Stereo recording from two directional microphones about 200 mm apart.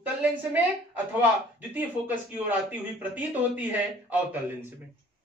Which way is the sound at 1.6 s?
10° right (ahead or behind).